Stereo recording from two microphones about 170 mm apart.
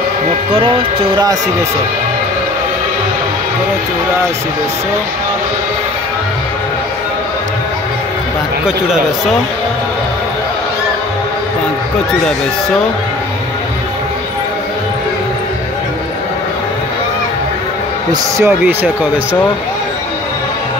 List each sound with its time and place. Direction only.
0.5 s speech: 30° right (ahead or behind)
18.4 s speech: 10° right (ahead or behind)